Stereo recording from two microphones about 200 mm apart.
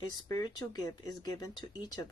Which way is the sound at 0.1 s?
20° left (ahead or behind).